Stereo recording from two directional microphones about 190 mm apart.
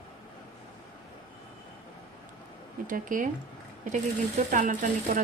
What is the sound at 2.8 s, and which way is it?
A woman's voice, 45° right (ahead or behind).